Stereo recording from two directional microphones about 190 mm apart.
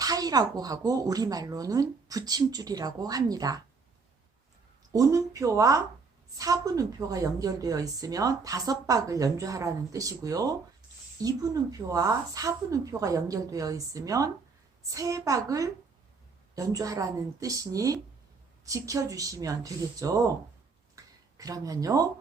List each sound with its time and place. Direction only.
0.0 s speech: 20° right (ahead or behind)
4.9 s a woman's voice: 15° right (ahead or behind)
20.9 s a sound: 20° right (ahead or behind)